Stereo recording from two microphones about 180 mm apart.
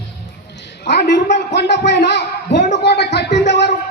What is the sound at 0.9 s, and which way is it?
A woman's voice, 75° left (ahead or behind).